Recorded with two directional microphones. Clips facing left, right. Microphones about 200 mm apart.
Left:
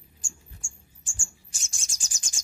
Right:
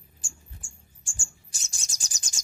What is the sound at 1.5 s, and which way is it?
Chirp, 35° right (ahead or behind).